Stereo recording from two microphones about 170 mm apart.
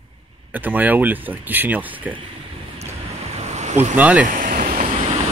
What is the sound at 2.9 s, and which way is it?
Vehicle, 40° right (ahead or behind).